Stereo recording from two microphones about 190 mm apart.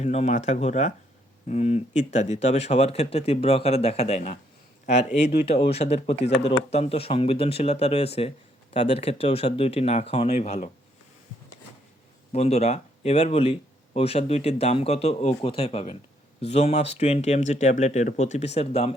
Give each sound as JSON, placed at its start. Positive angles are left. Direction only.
{"t": 0.0, "sound": "speech", "side_deg": 35}
{"t": 12.3, "sound": "speech", "side_deg": 35}